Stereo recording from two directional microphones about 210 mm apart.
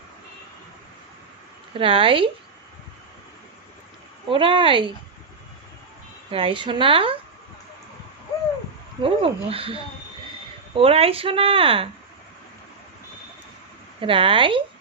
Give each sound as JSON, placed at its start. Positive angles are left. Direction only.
{"t": 1.7, "sound": "speech", "side_deg": -25}
{"t": 4.3, "sound": "speech", "side_deg": -25}
{"t": 6.3, "sound": "speech", "side_deg": -25}
{"t": 9.0, "sound": "speech", "side_deg": -25}
{"t": 14.0, "sound": "speech", "side_deg": -25}